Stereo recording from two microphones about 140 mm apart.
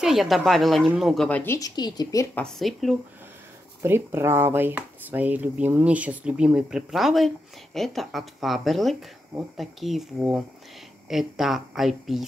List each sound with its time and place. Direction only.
0.0 s speech: centre (ahead or behind)
1.4 s speech: 20° left (ahead or behind)
1.8 s a woman's voice: 30° left (ahead or behind)
2.3 s speech: 5° left (ahead or behind)
3.8 s speech: 15° right (ahead or behind); by 12.3 s centre (ahead or behind)